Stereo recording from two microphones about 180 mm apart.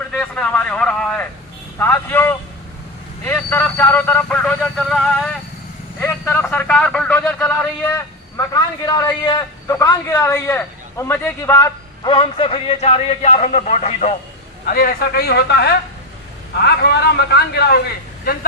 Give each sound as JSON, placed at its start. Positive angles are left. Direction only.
{"t": 0.1, "sound": "a sound", "side_deg": 5}
{"t": 1.8, "sound": "speech", "side_deg": 15}
{"t": 12.0, "sound": "a man's voice", "side_deg": 30}
{"t": 14.7, "sound": "a man's voice", "side_deg": 55}